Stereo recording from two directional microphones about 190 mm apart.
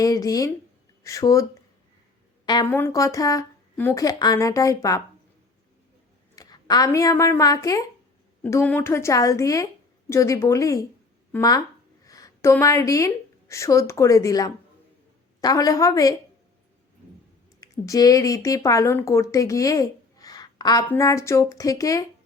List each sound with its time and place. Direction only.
0.0 s speech: 20° left (ahead or behind)
2.6 s speech: 10° left (ahead or behind)
6.3 s speech: 20° left (ahead or behind)
12.0 s a sound: 20° left (ahead or behind)
13.5 s speech: 15° left (ahead or behind)
17.6 s speech: 20° left (ahead or behind)